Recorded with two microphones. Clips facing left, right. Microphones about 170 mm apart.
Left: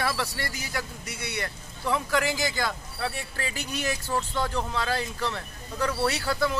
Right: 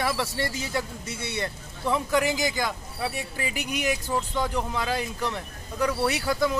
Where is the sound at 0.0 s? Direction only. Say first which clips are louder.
Right 2 dB; 20° right (ahead or behind).